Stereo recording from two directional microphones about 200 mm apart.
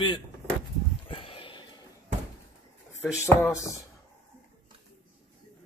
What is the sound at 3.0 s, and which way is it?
Speech, 10° left (ahead or behind).